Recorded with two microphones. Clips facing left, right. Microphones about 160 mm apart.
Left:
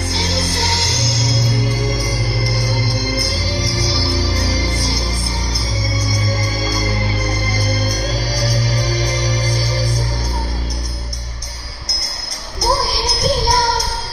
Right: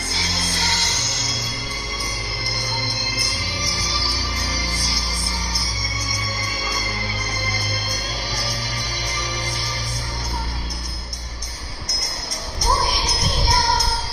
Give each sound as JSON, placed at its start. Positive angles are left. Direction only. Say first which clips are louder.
{"t": 0.1, "sound": "music", "louder": "left 7 dB", "side_deg": 75}
{"t": 2.4, "sound": "music", "louder": "left 5 dB", "side_deg": 30}
{"t": 7.9, "sound": "music", "louder": "left 8 dB", "side_deg": 40}
{"t": 12.5, "sound": "music", "louder": "left 4 dB", "side_deg": 35}